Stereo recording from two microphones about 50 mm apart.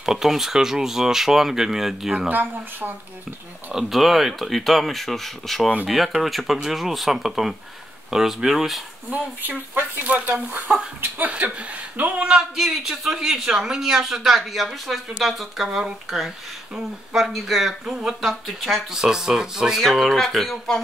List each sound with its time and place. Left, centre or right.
0.0 s speech: centre
2.2 s speech: right
3.7 s speech: centre
9.1 s speech: right
12.2 s speech: centre
12.5 s speech: centre
18.9 s speech: centre